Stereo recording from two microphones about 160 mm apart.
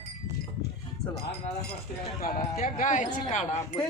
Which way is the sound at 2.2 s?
60° left (ahead or behind).